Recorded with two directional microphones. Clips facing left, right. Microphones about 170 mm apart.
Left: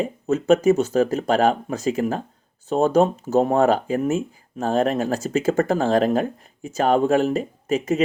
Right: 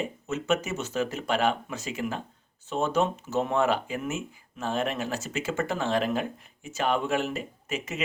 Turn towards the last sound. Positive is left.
turn(degrees=35)  # may be behind; listen again after turning